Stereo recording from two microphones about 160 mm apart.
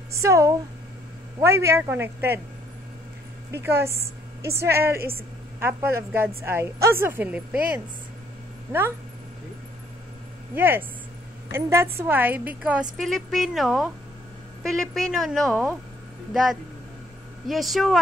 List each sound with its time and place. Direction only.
0.1 s a woman's voice: 20° right (ahead or behind)
3.5 s a woman's voice: 15° right (ahead or behind)
10.5 s a woman's voice: 15° right (ahead or behind)
12.9 s a woman's voice: centre (ahead or behind)
17.5 s a woman's voice: centre (ahead or behind)